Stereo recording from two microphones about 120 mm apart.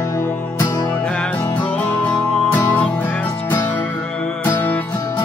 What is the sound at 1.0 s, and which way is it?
Music, 5° left (ahead or behind).